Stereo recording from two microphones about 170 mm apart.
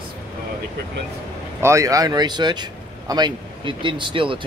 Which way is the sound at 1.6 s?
20° right (ahead or behind).